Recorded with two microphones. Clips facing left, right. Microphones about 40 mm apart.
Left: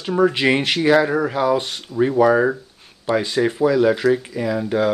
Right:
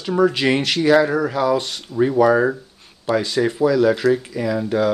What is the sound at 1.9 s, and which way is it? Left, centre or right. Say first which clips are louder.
Speech: even; centre.